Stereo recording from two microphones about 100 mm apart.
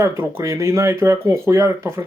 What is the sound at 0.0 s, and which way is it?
Speech, 25° right (ahead or behind).